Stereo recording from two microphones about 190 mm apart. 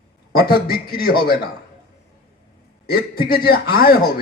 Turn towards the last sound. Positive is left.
turn(degrees=50)  # may be behind; listen again after turning